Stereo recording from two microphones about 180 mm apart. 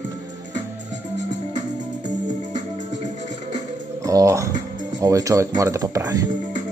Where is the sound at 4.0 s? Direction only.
20° right (ahead or behind).